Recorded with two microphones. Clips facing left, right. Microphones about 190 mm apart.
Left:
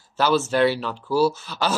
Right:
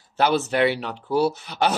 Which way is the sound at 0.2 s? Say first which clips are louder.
Left 1 dB; 60° right (ahead or behind).